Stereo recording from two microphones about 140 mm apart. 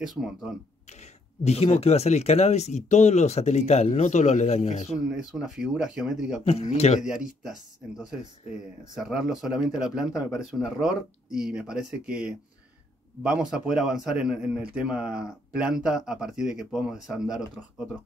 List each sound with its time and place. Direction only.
0.0 s a man's voice: 5° right (ahead or behind)
1.4 s speech: 50° left (ahead or behind)
5.1 s a man's voice: 5° right (ahead or behind)
6.4 s speech: 50° left (ahead or behind)
7.0 s a man's voice: 5° right (ahead or behind)
8.9 s a man's voice: 5° right (ahead or behind)